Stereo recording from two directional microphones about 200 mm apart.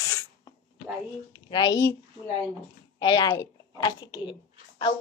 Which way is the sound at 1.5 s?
20° left (ahead or behind).